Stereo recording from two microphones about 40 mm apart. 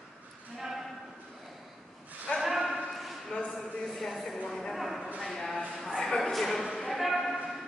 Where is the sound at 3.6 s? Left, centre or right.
Centre.